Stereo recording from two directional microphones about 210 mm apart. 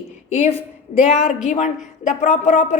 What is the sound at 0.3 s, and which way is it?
Speech, 30° left (ahead or behind).